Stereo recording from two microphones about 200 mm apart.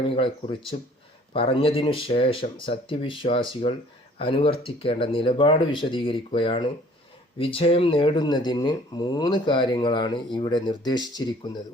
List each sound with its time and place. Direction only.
0.2 s speech: 25° left (ahead or behind)